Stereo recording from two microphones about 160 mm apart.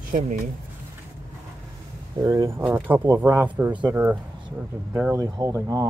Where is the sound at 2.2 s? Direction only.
20° right (ahead or behind).